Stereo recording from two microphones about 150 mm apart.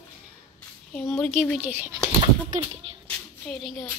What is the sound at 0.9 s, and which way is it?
A child's voice, 5° left (ahead or behind).